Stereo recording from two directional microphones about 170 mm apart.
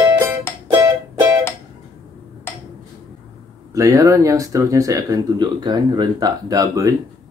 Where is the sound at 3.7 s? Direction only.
20° right (ahead or behind).